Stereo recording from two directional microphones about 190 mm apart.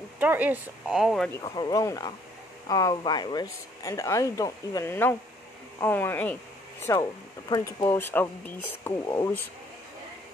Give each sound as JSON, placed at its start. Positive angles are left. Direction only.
{"t": 0.2, "sound": "speech", "side_deg": -10}
{"t": 1.3, "sound": "speech", "side_deg": 20}
{"t": 6.9, "sound": "speech", "side_deg": 20}